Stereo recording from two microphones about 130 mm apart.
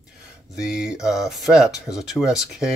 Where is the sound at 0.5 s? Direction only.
5° right (ahead or behind).